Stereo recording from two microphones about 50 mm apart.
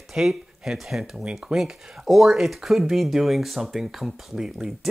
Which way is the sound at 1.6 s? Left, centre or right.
Centre.